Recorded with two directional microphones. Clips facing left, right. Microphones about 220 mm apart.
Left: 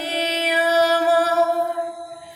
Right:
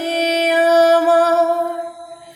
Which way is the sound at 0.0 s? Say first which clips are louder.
Right 7 dB; 45° right (ahead or behind).